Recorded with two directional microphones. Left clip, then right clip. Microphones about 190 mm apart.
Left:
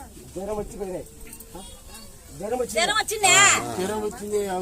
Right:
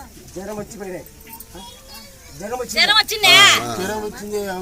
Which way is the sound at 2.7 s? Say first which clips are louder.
Right 10 dB; 55° left (ahead or behind).